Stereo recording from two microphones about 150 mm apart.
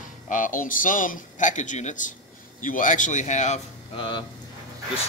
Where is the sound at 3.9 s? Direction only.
30° left (ahead or behind).